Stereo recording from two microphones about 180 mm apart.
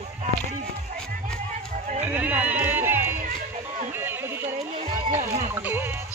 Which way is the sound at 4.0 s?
10° right (ahead or behind).